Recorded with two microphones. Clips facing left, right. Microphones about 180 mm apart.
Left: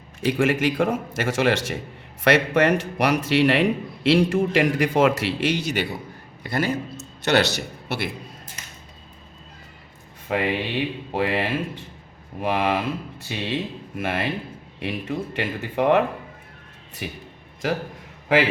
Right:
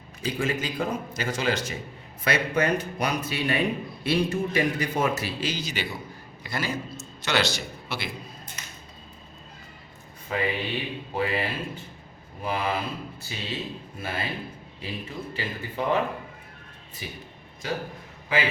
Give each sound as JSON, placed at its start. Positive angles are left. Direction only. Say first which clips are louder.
{"t": 0.2, "sound": "a man's voice", "louder": "left 7 dB", "side_deg": 90}
{"t": 6.4, "sound": "a sound", "louder": "left 6 dB", "side_deg": 55}
{"t": 7.9, "sound": "speech", "louder": "left 6 dB", "side_deg": 65}
{"t": 10.2, "sound": "a man's voice", "louder": "left 4 dB", "side_deg": 75}
{"t": 13.2, "sound": "a man's voice", "louder": "left 7 dB", "side_deg": 75}
{"t": 17.0, "sound": "speech", "louder": "left 6 dB", "side_deg": 70}
{"t": 17.6, "sound": "a man's voice", "louder": "left 6 dB", "side_deg": 90}